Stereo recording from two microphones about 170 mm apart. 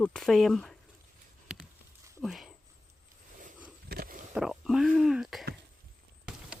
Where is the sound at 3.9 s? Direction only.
55° right (ahead or behind).